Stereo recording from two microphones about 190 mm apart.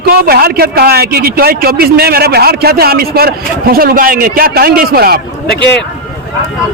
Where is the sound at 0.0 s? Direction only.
50° right (ahead or behind).